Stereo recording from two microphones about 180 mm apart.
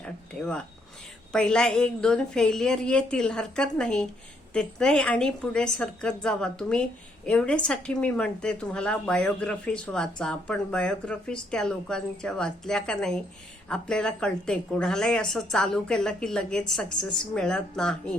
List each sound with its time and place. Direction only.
0.0 s a woman's voice: 5° left (ahead or behind)